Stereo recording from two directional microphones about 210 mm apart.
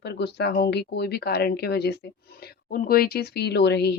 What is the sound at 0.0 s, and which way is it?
Speech, 50° left (ahead or behind).